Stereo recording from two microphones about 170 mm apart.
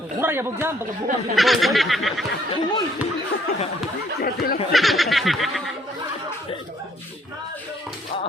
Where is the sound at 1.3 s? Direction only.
Centre (ahead or behind).